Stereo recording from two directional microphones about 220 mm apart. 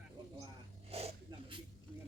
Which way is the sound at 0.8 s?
25° right (ahead or behind).